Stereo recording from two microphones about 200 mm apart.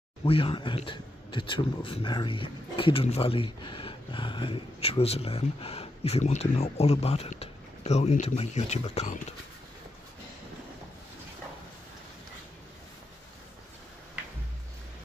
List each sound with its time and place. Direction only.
0.2 s speech: 25° left (ahead or behind)